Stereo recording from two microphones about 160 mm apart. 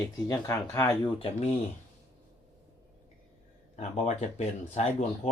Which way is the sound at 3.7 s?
45° left (ahead or behind).